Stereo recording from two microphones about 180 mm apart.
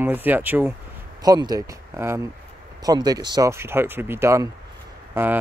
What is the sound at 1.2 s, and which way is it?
Speech, 20° right (ahead or behind).